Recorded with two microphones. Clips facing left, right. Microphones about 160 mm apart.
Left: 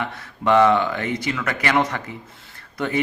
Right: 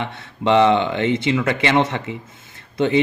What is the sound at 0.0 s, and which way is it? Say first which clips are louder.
Speech: right 2 dB; 20° right (ahead or behind).